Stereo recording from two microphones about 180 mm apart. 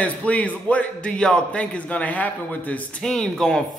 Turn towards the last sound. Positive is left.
turn(degrees=5)  # may be behind; listen again after turning